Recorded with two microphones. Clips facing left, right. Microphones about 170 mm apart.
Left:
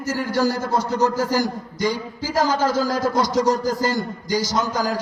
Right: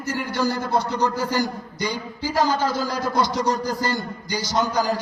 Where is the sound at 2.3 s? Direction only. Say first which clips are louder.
Left 2 dB; 45° left (ahead or behind).